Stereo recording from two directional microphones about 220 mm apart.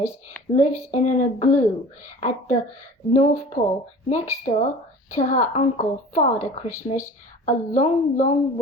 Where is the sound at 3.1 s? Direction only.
30° left (ahead or behind).